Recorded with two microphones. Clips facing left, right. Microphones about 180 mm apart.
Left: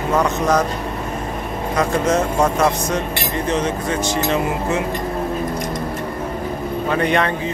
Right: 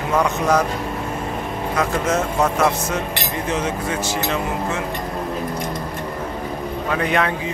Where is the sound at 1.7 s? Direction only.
Centre (ahead or behind).